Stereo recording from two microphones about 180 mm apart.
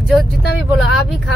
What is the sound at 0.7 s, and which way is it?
Speech, centre (ahead or behind).